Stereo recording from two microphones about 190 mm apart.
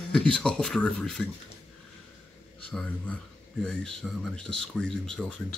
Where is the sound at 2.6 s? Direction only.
5° left (ahead or behind).